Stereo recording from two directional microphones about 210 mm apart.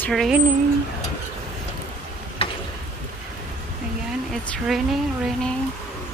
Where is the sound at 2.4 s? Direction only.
25° left (ahead or behind).